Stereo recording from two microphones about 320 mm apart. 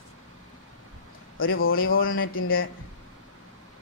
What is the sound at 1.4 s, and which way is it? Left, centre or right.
Speech, left.